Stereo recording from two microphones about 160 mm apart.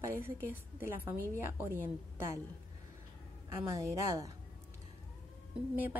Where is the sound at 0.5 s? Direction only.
15° right (ahead or behind).